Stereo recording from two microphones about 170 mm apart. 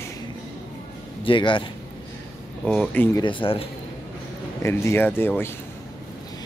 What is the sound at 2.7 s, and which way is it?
Speech, 5° left (ahead or behind).